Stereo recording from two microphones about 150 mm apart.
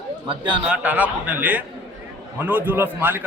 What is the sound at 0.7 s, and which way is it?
A man's voice, 10° right (ahead or behind).